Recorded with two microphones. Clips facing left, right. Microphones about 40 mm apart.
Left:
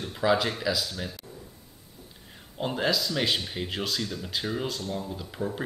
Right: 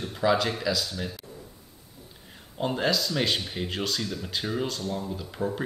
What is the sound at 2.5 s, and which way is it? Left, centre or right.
Speech, centre.